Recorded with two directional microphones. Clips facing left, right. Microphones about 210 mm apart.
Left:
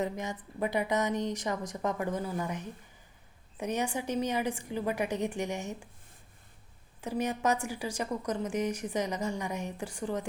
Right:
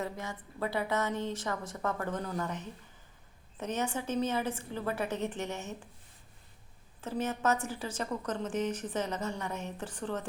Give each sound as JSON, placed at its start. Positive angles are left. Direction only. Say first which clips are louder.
{"t": 0.0, "sound": "a woman's voice", "louder": "left 4 dB", "side_deg": 20}
{"t": 7.0, "sound": "a woman's voice", "louder": "left 2 dB", "side_deg": 15}